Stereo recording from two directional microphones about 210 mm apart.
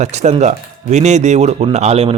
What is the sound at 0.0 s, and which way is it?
Speech, 30° right (ahead or behind).